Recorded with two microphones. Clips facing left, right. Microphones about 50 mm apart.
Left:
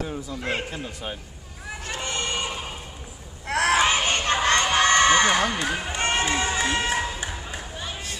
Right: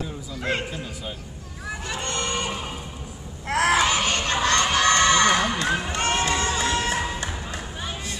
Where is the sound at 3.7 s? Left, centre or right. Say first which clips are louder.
Even; left.